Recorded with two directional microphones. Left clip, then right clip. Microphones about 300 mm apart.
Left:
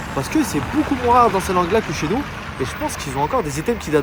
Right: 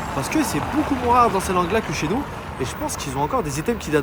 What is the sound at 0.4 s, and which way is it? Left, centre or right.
Speech, right.